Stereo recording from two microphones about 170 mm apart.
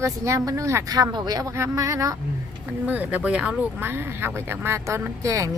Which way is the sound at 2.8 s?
10° right (ahead or behind).